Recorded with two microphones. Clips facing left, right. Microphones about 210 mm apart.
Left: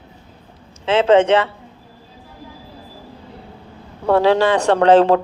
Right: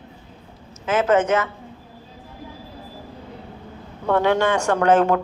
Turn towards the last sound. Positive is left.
turn(degrees=35)  # may be behind; listen again after turning